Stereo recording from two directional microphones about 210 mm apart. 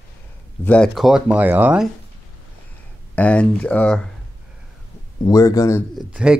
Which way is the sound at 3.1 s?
5° left (ahead or behind).